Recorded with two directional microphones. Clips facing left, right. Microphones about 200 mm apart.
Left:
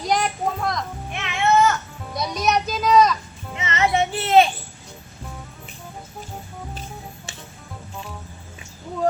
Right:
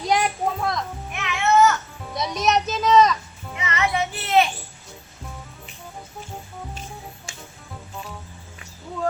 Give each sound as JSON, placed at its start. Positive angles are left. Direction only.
{"t": 0.0, "sound": "a sound", "side_deg": 0}
{"t": 1.1, "sound": "baby cry", "side_deg": 30}
{"t": 2.1, "sound": "a child's voice", "side_deg": 0}
{"t": 3.5, "sound": "child singing", "side_deg": 25}